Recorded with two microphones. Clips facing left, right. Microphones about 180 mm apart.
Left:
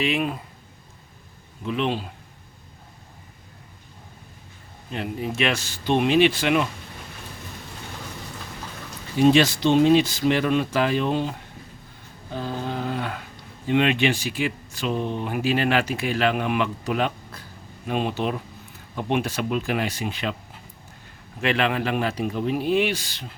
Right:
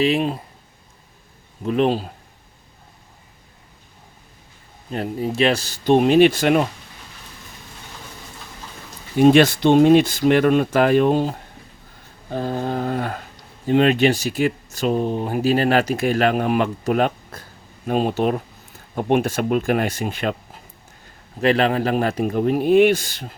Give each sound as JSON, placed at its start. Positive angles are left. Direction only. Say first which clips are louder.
{"t": 0.0, "sound": "speech", "louder": "right 5 dB", "side_deg": -35}
{"t": 1.6, "sound": "speech", "louder": "right 6 dB", "side_deg": -45}
{"t": 4.9, "sound": "speech", "louder": "right 4 dB", "side_deg": -40}
{"t": 9.1, "sound": "speech", "louder": "right 4 dB", "side_deg": -55}
{"t": 21.4, "sound": "speech", "louder": "right 5 dB", "side_deg": -40}